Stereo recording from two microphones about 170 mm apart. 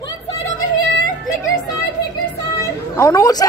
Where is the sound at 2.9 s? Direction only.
20° left (ahead or behind).